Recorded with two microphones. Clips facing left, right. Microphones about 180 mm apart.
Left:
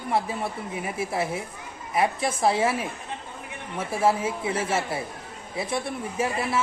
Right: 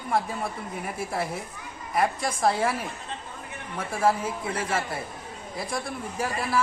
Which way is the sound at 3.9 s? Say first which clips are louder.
Left 1 dB; 25° left (ahead or behind).